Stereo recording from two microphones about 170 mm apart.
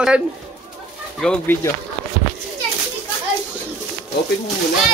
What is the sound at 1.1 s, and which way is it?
Speech, 5° left (ahead or behind).